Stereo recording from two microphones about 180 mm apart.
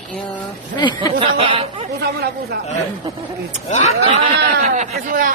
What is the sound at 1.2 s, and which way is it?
Speech, 30° right (ahead or behind).